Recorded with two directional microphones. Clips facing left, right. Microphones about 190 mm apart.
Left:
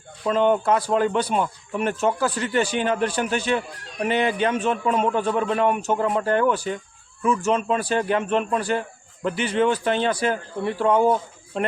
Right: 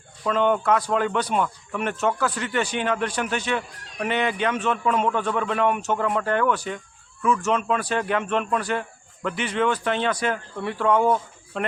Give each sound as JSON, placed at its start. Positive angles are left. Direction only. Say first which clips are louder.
{"t": 0.3, "sound": "speech", "louder": "left 2 dB", "side_deg": 30}